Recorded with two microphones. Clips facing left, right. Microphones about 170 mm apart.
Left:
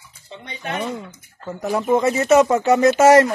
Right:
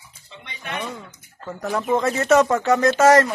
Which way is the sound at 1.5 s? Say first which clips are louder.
Left 3 dB; 10° left (ahead or behind).